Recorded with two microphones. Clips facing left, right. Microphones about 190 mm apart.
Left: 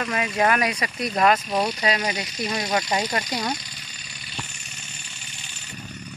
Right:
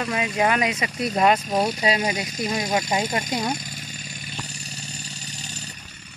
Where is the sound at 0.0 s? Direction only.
15° right (ahead or behind).